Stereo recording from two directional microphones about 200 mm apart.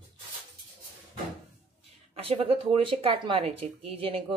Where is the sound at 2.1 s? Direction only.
30° right (ahead or behind).